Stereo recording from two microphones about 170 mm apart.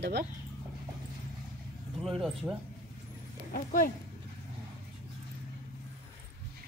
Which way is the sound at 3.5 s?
55° left (ahead or behind).